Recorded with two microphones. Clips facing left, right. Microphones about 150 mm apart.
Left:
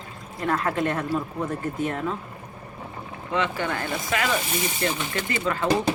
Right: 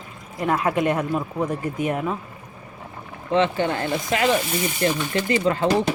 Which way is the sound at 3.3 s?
25° right (ahead or behind).